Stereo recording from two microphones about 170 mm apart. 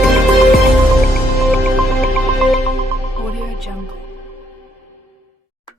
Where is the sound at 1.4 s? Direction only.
Centre (ahead or behind).